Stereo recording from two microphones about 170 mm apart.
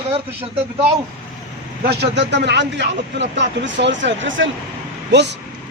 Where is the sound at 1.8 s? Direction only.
70° right (ahead or behind).